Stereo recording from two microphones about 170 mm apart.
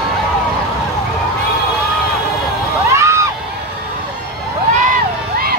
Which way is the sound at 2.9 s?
15° right (ahead or behind).